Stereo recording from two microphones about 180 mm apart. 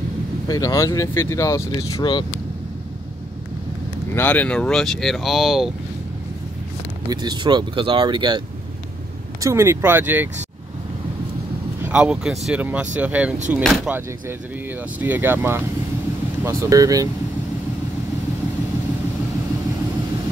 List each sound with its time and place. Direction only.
0.5 s speech: 20° left (ahead or behind)
4.1 s speech: 10° left (ahead or behind)
7.1 s speech: 25° right (ahead or behind)
9.4 s speech: 15° right (ahead or behind)
11.8 s speech: 5° right (ahead or behind)
15.0 s speech: 10° right (ahead or behind)